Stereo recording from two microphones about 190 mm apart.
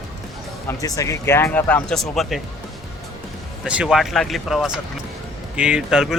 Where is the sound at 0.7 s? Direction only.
15° left (ahead or behind); by 2.4 s centre (ahead or behind).